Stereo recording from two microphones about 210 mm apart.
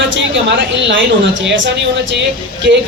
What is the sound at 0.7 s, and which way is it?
A man's voice, 60° right (ahead or behind).